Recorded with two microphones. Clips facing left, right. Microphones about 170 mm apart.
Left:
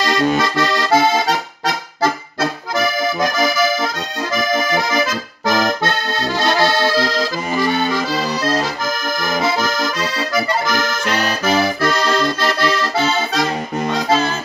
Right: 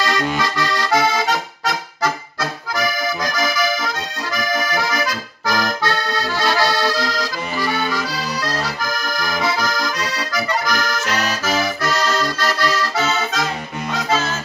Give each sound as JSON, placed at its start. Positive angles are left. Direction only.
{"t": 0.0, "sound": "accordion", "side_deg": 30}
{"t": 2.7, "sound": "accordion", "side_deg": 25}
{"t": 7.5, "sound": "accordion", "side_deg": 45}
{"t": 8.5, "sound": "accordion", "side_deg": 25}